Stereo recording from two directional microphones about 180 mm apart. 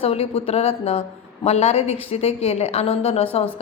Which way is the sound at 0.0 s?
35° left (ahead or behind).